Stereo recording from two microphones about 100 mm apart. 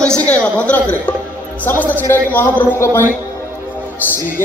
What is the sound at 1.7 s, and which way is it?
Mantra, 20° left (ahead or behind).